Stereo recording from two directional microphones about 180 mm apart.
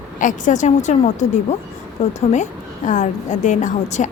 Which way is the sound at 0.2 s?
45° left (ahead or behind).